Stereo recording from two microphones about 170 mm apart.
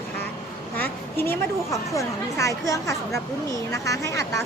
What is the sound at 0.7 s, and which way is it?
A woman's voice, 10° left (ahead or behind).